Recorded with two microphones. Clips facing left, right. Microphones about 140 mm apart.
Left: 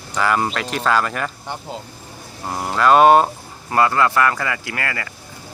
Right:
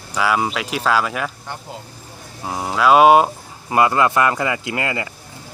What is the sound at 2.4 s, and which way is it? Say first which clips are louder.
Speech: even; 5° right (ahead or behind).